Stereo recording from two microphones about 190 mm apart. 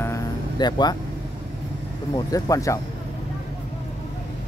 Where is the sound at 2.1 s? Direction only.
20° left (ahead or behind).